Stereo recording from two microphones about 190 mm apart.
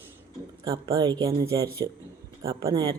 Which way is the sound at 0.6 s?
20° right (ahead or behind).